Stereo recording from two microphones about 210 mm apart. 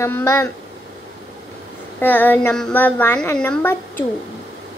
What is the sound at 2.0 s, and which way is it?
A woman's voice, 10° left (ahead or behind).